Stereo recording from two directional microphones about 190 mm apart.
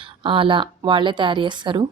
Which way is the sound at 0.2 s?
25° right (ahead or behind).